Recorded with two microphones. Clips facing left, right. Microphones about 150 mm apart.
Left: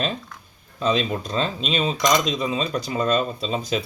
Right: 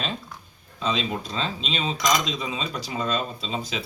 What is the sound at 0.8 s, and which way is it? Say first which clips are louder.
Speech: left 5 dB; 45° left (ahead or behind).